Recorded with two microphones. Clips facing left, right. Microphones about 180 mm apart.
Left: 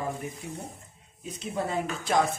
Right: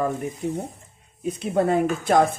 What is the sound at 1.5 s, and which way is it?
Speech, 55° right (ahead or behind).